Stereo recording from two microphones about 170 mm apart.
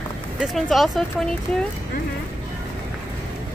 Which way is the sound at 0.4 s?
Centre (ahead or behind).